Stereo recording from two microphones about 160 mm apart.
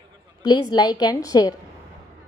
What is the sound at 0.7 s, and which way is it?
Speech, 25° left (ahead or behind).